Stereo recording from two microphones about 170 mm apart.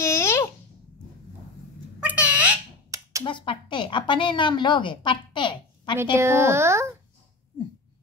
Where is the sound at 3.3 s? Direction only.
30° left (ahead or behind).